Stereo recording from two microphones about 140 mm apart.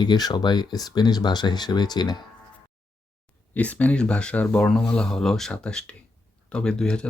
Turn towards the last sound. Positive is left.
turn(degrees=5)  # may be behind; listen again after turning